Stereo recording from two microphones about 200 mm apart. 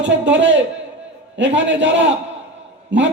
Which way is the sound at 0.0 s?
65° right (ahead or behind).